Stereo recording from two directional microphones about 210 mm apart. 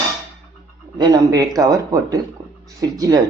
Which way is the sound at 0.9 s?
20° right (ahead or behind).